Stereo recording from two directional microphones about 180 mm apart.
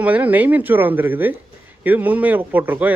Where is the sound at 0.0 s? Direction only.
10° right (ahead or behind).